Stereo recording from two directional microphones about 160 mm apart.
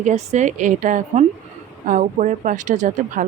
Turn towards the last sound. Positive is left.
turn(degrees=-50)  # may be behind; listen again after turning